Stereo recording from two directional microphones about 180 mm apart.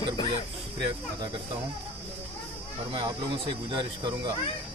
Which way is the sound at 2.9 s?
30° right (ahead or behind).